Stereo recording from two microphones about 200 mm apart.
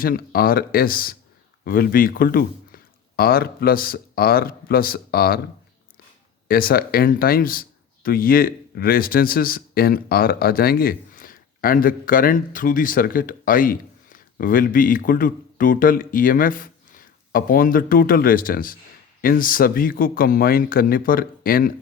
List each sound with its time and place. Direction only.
0.0 s speech: 45° left (ahead or behind)
6.5 s speech: 45° left (ahead or behind)